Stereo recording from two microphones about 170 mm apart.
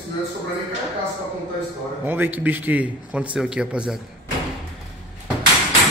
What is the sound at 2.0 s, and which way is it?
Speech, 10° right (ahead or behind).